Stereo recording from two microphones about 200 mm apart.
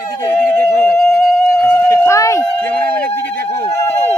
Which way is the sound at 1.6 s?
15° left (ahead or behind).